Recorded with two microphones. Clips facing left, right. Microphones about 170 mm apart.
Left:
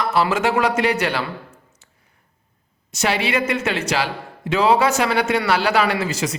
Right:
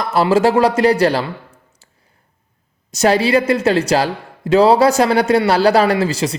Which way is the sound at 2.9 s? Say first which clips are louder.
Right 7 dB; 40° right (ahead or behind).